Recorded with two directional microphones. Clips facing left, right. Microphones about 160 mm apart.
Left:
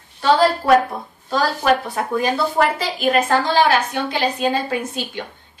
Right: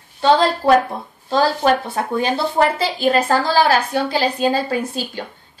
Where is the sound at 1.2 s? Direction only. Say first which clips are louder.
Right 2 dB; 30° right (ahead or behind).